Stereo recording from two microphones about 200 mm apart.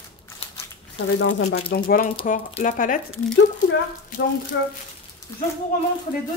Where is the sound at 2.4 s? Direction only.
35° left (ahead or behind).